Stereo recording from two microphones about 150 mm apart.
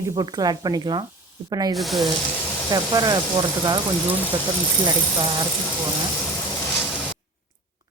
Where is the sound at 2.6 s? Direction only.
25° right (ahead or behind).